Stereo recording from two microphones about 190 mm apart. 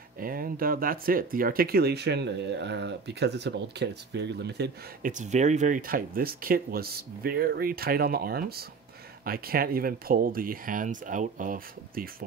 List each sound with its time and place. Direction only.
0.2 s speech: 50° right (ahead or behind)
5.1 s speech: 40° right (ahead or behind)